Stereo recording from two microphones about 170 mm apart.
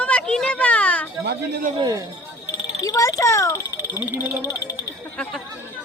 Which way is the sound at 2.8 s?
20° left (ahead or behind).